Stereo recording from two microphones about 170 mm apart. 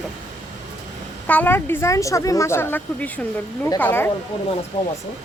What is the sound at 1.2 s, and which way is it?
Speech, 10° left (ahead or behind).